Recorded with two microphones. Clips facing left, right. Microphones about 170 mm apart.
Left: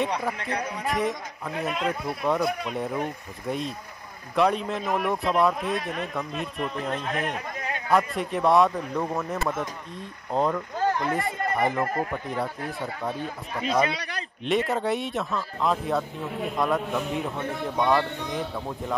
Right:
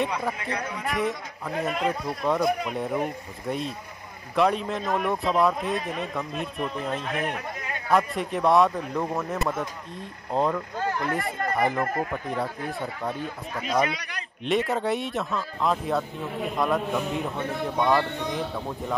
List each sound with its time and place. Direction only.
0.8 s speech: centre (ahead or behind)
13.8 s a man's voice: 30° left (ahead or behind)
14.4 s speech: centre (ahead or behind)